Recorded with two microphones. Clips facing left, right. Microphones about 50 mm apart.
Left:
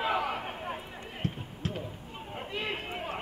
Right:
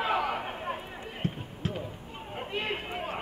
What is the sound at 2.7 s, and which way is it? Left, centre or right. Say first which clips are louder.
Run: right 1 dB; centre.